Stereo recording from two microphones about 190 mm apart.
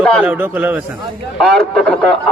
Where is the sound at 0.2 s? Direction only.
10° right (ahead or behind).